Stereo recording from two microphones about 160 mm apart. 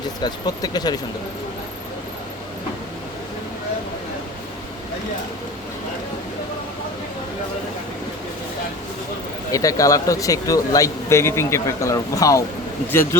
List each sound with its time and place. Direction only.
0.2 s speech: 25° left (ahead or behind)
9.5 s speech: 20° left (ahead or behind)